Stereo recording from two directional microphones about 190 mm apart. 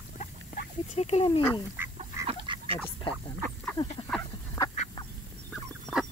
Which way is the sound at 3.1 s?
25° left (ahead or behind).